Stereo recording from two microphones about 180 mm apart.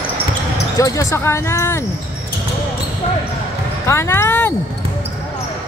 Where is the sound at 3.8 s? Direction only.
15° left (ahead or behind).